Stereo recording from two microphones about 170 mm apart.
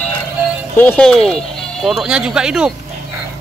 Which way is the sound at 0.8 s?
10° left (ahead or behind).